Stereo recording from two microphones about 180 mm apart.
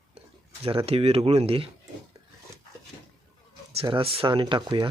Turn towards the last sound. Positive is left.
turn(degrees=-25)  # may be behind; listen again after turning